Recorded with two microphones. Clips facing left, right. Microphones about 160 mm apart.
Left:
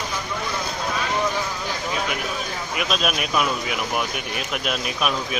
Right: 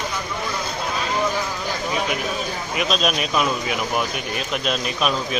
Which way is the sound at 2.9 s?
5° left (ahead or behind).